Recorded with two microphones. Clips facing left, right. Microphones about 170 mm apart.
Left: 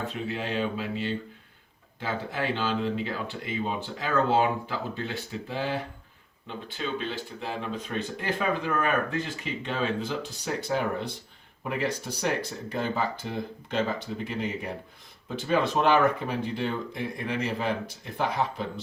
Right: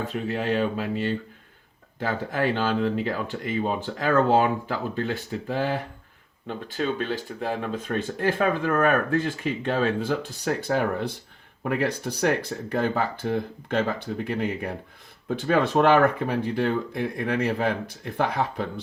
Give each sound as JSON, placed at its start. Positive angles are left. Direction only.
{"t": 0.1, "sound": "speech", "side_deg": -45}